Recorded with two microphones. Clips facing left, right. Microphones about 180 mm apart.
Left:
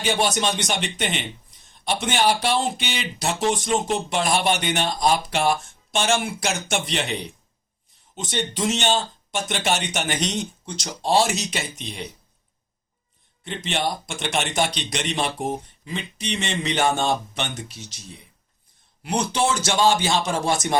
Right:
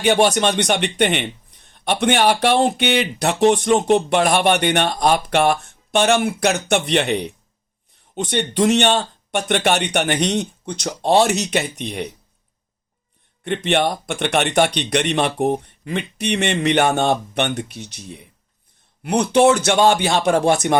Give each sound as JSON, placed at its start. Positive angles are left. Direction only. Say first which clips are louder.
{"t": 0.0, "sound": "speech", "louder": "right 7 dB", "side_deg": -60}
{"t": 13.4, "sound": "speech", "louder": "right 7 dB", "side_deg": -60}